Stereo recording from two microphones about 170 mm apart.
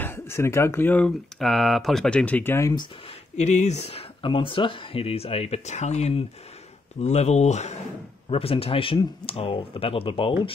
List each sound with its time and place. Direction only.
0.0 s speech: 15° left (ahead or behind)
3.3 s speech: 40° left (ahead or behind)